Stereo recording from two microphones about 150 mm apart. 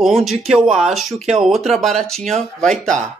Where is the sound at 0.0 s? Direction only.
Centre (ahead or behind).